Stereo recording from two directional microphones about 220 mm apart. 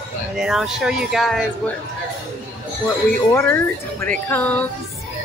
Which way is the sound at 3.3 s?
10° left (ahead or behind).